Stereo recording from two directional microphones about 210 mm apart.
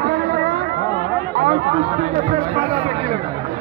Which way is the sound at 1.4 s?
35° right (ahead or behind).